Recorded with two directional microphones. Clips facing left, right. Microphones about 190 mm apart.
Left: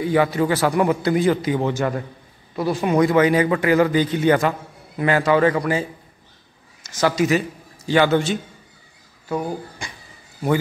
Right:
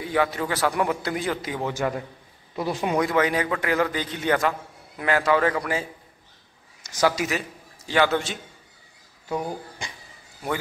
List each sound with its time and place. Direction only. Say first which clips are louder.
0.0 s a man's voice: left 6 dB; 5° left (ahead or behind)
1.7 s speech: left 4 dB; 10° right (ahead or behind)
3.0 s a man's voice: left 8 dB; centre (ahead or behind)
6.8 s a man's voice: left 3 dB; 15° right (ahead or behind)
9.3 s speech: left 3 dB; 20° right (ahead or behind)
9.8 s a sound: left 2 dB; 20° right (ahead or behind)